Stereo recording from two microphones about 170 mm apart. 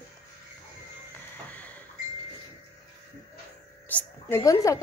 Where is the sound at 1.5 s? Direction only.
10° left (ahead or behind).